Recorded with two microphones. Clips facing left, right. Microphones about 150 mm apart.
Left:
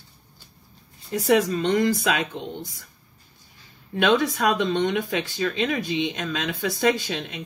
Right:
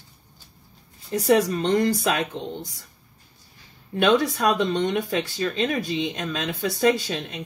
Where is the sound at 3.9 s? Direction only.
45° right (ahead or behind).